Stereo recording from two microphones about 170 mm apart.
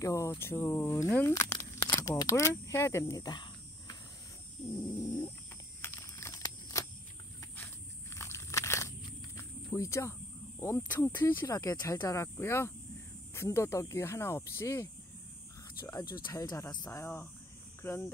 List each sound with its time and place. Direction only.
0.0 s speech: 20° left (ahead or behind)
5.8 s a sound: 15° left (ahead or behind)
9.4 s cricket: 15° left (ahead or behind)
10.6 s speech: 10° left (ahead or behind)